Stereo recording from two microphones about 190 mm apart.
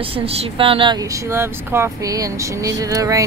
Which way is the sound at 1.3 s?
15° right (ahead or behind).